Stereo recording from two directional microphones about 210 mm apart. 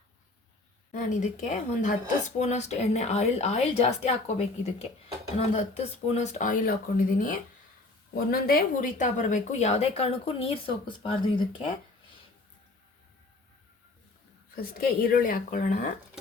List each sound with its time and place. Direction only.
0.9 s a woman's voice: 35° left (ahead or behind)
14.5 s a woman's voice: 45° left (ahead or behind)